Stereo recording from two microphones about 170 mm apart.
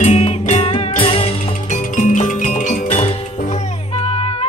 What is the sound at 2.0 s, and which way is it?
Music, 50° left (ahead or behind).